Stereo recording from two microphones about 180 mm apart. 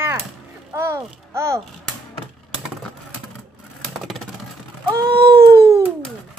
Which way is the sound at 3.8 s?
Centre (ahead or behind).